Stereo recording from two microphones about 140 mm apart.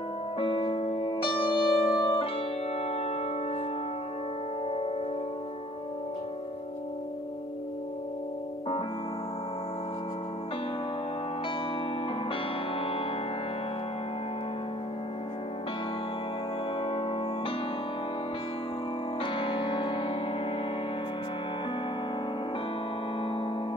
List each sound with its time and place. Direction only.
0.4 s music: 40° left (ahead or behind)
12.3 s music: 40° left (ahead or behind)
16.8 s music: 35° left (ahead or behind)
19.2 s music: 40° left (ahead or behind)
23.2 s music: 40° left (ahead or behind)